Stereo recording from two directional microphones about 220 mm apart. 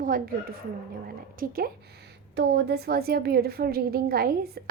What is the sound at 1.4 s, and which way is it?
A woman's voice, 40° right (ahead or behind).